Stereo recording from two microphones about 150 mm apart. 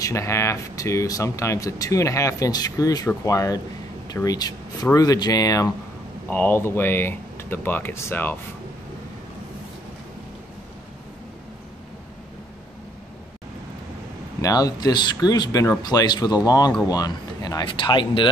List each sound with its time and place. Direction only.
0.0 s speech: 20° left (ahead or behind)
14.4 s speech: 25° left (ahead or behind)